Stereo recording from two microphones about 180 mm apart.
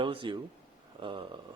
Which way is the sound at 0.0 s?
30° right (ahead or behind).